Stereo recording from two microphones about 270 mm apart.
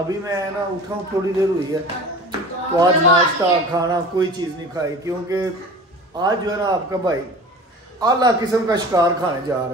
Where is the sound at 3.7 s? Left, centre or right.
Centre.